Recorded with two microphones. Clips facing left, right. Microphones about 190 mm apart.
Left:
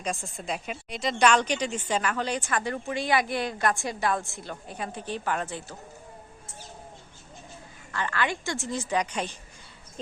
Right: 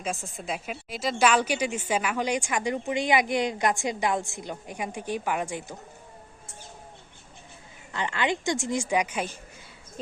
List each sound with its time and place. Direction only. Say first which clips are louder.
0.0 s a woman's voice: even; centre (ahead or behind)
7.9 s a woman's voice: right 2 dB; 20° right (ahead or behind)